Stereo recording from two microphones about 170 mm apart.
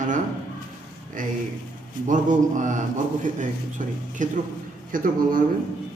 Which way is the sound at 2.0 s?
50° right (ahead or behind).